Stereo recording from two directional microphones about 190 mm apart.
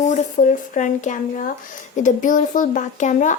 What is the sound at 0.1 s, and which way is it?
A child's voice, 40° left (ahead or behind).